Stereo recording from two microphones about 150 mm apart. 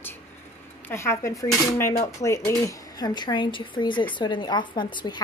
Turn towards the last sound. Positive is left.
turn(degrees=30)  # may be behind; listen again after turning